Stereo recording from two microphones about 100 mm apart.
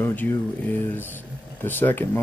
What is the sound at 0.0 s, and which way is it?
Speech, 20° left (ahead or behind).